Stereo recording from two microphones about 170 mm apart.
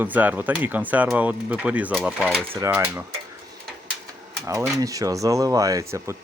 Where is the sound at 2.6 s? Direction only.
15° right (ahead or behind).